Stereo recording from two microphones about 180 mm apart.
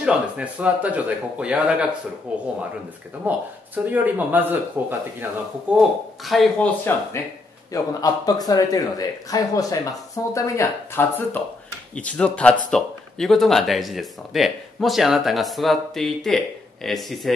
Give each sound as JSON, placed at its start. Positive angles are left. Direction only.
{"t": 0.0, "sound": "a man's voice", "side_deg": -5}
{"t": 5.8, "sound": "speech", "side_deg": 0}
{"t": 7.7, "sound": "speech", "side_deg": 20}